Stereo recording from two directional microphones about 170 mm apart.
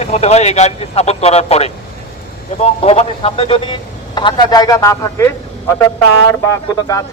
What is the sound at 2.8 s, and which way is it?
A man's voice, 35° left (ahead or behind).